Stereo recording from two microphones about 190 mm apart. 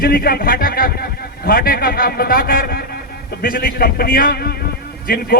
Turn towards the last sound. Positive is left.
turn(degrees=50)  # may be behind; listen again after turning